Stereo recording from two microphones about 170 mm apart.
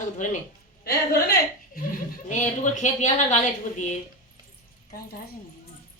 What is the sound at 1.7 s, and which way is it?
Speech, 55° left (ahead or behind).